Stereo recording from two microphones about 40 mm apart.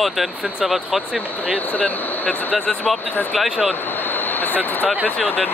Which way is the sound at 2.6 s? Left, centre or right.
Left.